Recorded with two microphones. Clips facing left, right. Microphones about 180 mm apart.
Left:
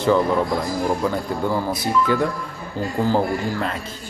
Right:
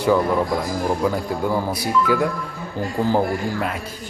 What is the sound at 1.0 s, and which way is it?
A man's voice, 5° right (ahead or behind).